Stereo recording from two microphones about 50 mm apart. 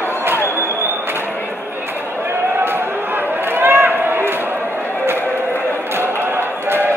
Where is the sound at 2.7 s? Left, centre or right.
Right.